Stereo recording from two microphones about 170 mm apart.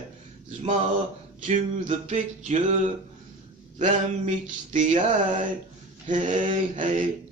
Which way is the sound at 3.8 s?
45° right (ahead or behind).